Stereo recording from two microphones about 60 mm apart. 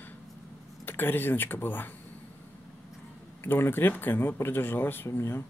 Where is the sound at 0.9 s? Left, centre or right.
Left.